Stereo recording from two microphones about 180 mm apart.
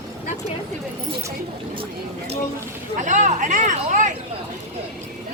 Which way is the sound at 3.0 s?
45° right (ahead or behind).